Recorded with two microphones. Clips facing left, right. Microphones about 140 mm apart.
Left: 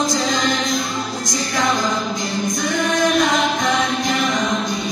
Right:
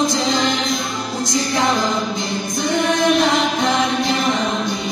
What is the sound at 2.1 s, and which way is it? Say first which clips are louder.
A capella: left 1 dB; 25° right (ahead or behind).